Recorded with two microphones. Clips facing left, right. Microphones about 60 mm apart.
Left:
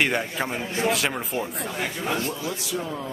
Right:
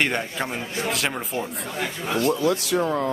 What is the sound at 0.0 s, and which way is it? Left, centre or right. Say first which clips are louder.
Speech: even; centre.